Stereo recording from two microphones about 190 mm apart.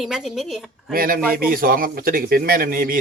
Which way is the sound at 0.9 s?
50° right (ahead or behind).